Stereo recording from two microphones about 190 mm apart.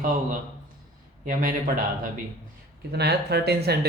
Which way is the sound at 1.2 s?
45° right (ahead or behind).